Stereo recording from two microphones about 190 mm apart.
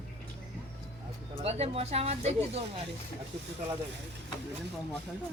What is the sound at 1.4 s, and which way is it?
Speech, 30° right (ahead or behind).